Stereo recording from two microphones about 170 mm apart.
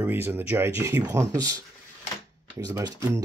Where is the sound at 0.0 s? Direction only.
10° right (ahead or behind).